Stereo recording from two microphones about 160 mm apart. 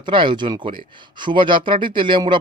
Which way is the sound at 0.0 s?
30° right (ahead or behind).